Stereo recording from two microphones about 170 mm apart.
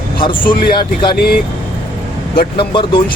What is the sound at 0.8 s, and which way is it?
Speech, 30° left (ahead or behind).